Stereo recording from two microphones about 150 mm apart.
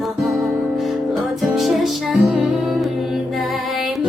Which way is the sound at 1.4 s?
Centre (ahead or behind).